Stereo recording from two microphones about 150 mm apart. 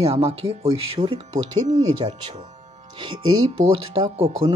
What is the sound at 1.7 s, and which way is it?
Speech, 45° right (ahead or behind).